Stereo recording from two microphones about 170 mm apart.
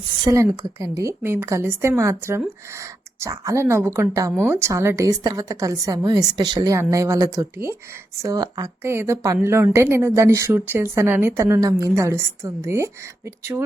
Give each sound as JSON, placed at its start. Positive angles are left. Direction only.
{"t": 0.3, "sound": "speech", "side_deg": -20}